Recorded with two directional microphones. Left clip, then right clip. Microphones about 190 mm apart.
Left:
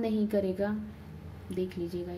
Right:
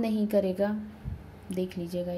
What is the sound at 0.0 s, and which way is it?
A woman's voice, 20° right (ahead or behind).